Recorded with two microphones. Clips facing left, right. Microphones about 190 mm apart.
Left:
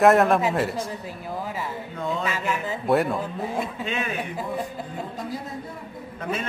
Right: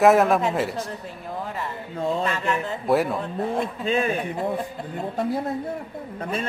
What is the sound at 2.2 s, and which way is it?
A man's voice, 5° left (ahead or behind).